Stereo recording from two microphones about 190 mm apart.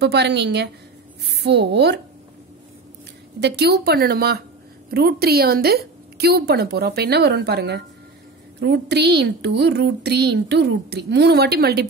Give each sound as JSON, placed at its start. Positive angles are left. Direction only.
{"t": 0.0, "sound": "a woman's voice", "side_deg": -60}
{"t": 3.3, "sound": "speech", "side_deg": -60}